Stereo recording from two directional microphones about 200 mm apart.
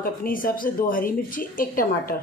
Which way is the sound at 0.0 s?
45° left (ahead or behind).